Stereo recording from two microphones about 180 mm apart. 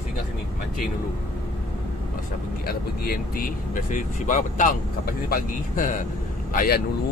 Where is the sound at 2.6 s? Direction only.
55° left (ahead or behind).